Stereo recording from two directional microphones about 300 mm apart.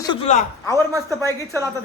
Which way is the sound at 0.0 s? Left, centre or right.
Centre.